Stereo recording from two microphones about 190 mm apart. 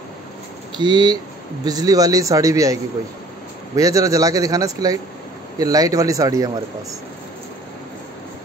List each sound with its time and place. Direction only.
0.7 s a man's voice: 20° right (ahead or behind)